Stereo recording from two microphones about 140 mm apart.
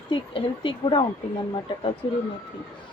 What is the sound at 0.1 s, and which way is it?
Speech, 40° left (ahead or behind).